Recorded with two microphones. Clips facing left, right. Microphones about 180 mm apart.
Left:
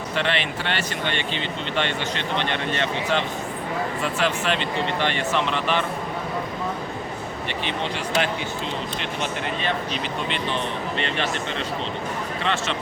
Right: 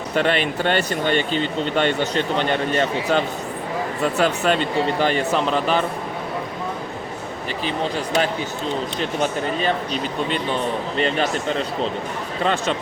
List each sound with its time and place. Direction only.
0.2 s speech: 45° right (ahead or behind)
7.6 s speech: 40° right (ahead or behind)